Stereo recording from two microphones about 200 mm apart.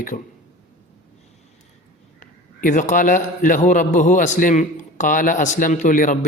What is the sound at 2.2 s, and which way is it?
A man's voice, 40° left (ahead or behind).